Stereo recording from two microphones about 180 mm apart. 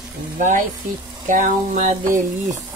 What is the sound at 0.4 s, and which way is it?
A woman's voice, 45° right (ahead or behind).